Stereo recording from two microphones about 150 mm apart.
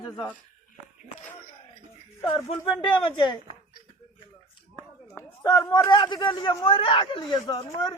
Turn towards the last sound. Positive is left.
turn(degrees=30)  # may be behind; listen again after turning